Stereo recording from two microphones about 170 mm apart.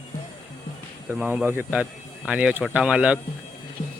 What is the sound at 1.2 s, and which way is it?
Speech, 10° right (ahead or behind).